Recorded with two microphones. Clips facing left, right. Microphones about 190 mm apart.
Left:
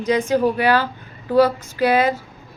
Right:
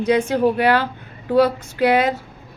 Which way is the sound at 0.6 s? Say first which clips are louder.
Right 1 dB; 60° right (ahead or behind).